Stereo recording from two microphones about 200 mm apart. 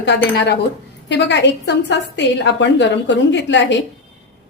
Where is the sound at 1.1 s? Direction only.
60° left (ahead or behind).